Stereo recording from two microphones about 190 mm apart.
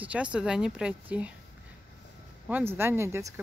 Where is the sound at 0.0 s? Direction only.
5° right (ahead or behind).